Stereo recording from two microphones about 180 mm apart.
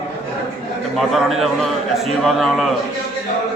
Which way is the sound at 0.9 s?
Centre (ahead or behind).